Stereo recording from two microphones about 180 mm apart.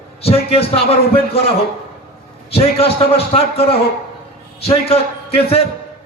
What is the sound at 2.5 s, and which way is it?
Speech, 35° left (ahead or behind).